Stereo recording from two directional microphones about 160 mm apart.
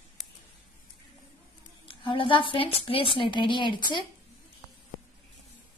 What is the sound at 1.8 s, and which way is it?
A woman's voice, 35° left (ahead or behind).